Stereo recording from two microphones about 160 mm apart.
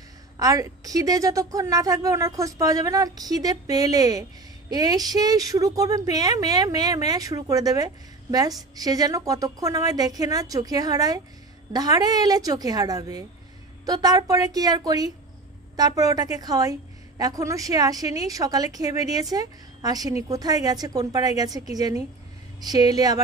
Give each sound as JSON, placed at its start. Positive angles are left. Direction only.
{"t": 0.4, "sound": "a woman's voice", "side_deg": -20}